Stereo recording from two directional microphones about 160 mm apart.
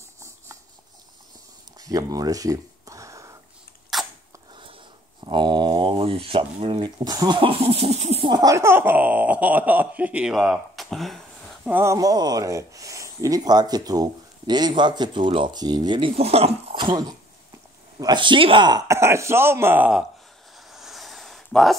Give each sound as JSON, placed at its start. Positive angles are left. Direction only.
{"t": 1.8, "sound": "a sound", "side_deg": -20}
{"t": 3.9, "sound": "sneeze", "side_deg": 0}
{"t": 5.2, "sound": "speech", "side_deg": -30}
{"t": 8.3, "sound": "speech", "side_deg": -20}
{"t": 11.6, "sound": "speech", "side_deg": -15}
{"t": 16.2, "sound": "speech", "side_deg": -40}
{"t": 20.7, "sound": "a sound", "side_deg": 0}